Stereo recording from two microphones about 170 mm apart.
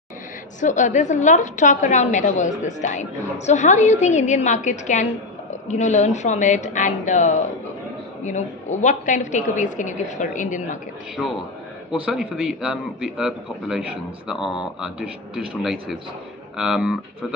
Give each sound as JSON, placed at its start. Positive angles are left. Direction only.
{"t": 0.6, "sound": "a woman's voice", "side_deg": 45}
{"t": 11.2, "sound": "a man's voice", "side_deg": 0}